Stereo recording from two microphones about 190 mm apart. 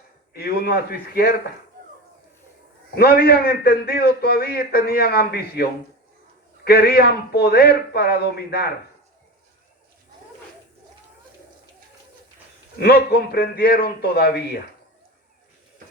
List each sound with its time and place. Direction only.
0.3 s speech: 55° left (ahead or behind)
2.9 s a man's voice: 55° left (ahead or behind)
6.7 s speech: 55° left (ahead or behind)
12.8 s speech: 55° left (ahead or behind)